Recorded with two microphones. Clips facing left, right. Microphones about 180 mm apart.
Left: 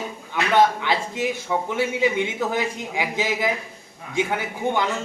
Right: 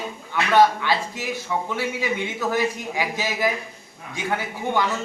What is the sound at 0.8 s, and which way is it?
Speech, 20° left (ahead or behind).